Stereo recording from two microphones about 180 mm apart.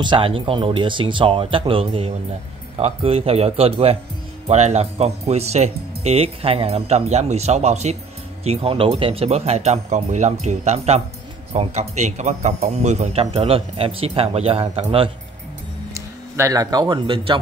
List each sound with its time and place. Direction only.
0.0 s a man's voice: 25° right (ahead or behind)
16.3 s speech: 20° right (ahead or behind)